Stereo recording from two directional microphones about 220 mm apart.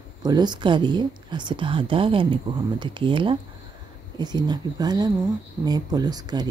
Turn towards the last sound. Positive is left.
turn(degrees=-20)  # may be behind; listen again after turning